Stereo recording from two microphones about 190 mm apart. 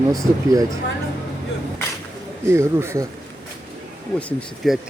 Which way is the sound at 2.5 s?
15° right (ahead or behind).